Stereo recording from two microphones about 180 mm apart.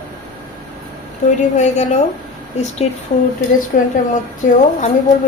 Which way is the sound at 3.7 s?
55° left (ahead or behind).